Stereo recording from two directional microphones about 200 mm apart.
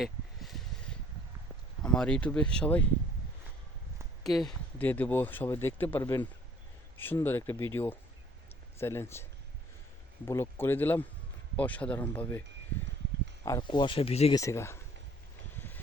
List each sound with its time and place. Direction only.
0.0 s a sound: centre (ahead or behind)
1.8 s speech: 5° left (ahead or behind)
4.2 s speech: centre (ahead or behind)
10.2 s speech: 10° left (ahead or behind)
13.4 s speech: 20° left (ahead or behind)
14.3 s speech: 15° left (ahead or behind)